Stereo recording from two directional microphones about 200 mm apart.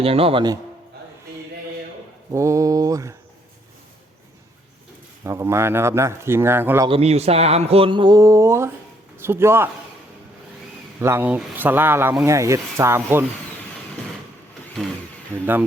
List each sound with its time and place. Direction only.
0.0 s speech: 30° right (ahead or behind)
2.3 s speech: 15° right (ahead or behind)
5.2 s speech: 15° right (ahead or behind)
6.8 s speech: 30° right (ahead or behind); by 9.6 s 10° right (ahead or behind)
11.0 s speech: 10° right (ahead or behind)
15.3 s speech: 10° right (ahead or behind)